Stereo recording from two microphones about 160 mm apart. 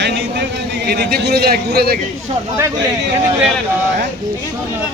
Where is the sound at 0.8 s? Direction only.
80° right.